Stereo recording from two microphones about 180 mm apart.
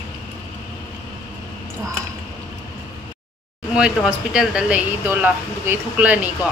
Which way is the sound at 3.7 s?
5° right (ahead or behind).